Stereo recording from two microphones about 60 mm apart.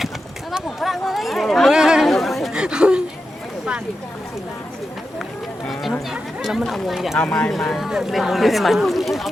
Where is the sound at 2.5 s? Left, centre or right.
Centre.